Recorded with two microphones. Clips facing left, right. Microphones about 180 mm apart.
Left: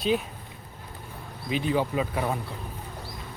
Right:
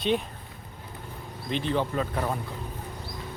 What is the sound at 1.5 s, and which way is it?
Speech, 10° left (ahead or behind).